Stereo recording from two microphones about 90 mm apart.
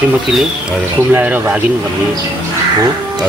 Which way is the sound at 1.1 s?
15° right (ahead or behind).